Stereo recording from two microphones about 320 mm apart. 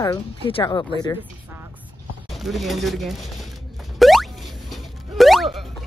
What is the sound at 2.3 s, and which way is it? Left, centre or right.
Speech, centre.